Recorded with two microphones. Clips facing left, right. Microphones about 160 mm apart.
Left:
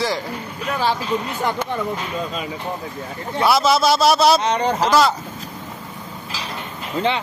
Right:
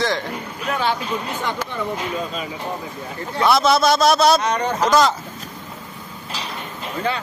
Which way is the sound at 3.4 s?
5° left (ahead or behind).